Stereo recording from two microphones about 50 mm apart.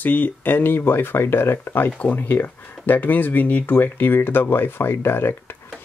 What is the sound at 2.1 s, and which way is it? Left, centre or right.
Speech, left.